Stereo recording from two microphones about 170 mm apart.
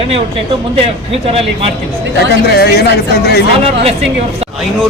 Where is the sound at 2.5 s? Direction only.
70° left (ahead or behind).